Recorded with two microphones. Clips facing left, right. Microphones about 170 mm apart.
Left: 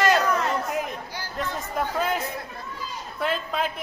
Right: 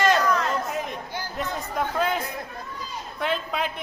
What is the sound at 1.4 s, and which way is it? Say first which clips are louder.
A woman's voice: even; centre (ahead or behind).